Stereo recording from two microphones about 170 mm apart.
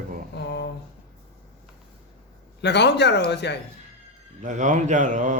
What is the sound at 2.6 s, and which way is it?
A man's voice, 90° left.